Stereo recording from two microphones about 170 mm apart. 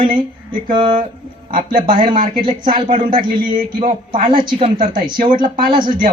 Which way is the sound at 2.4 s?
30° right (ahead or behind).